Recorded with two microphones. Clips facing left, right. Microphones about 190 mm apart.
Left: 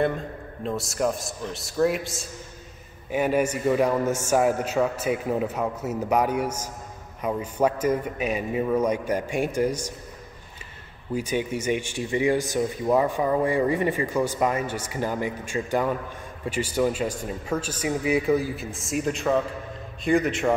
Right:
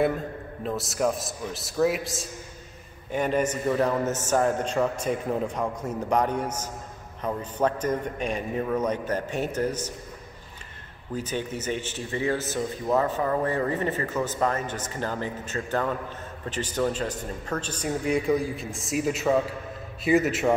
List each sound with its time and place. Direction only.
0.7 s a man's voice: centre (ahead or behind)
11.1 s a man's voice: 10° left (ahead or behind)